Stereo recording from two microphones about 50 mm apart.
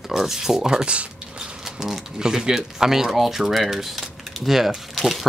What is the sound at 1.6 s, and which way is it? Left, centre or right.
Speech, centre.